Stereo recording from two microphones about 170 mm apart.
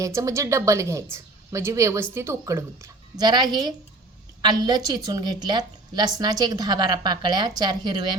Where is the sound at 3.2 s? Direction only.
25° right (ahead or behind).